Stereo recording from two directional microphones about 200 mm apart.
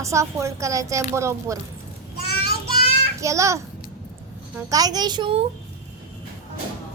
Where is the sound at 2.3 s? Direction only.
50° left (ahead or behind).